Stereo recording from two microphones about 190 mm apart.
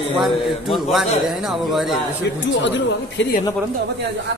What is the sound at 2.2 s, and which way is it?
Speech, 65° left (ahead or behind).